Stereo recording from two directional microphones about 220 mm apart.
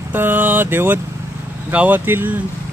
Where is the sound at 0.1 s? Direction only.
10° right (ahead or behind).